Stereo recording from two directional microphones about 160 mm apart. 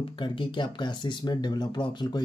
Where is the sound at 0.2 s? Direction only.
30° left (ahead or behind).